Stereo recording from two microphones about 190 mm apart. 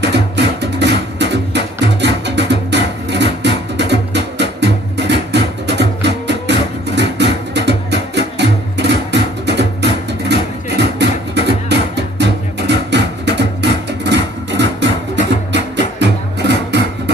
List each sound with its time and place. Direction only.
0.0 s music: 65° right (ahead or behind)